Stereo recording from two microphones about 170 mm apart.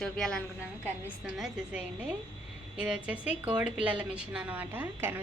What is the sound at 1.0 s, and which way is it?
A woman's voice, 5° right (ahead or behind).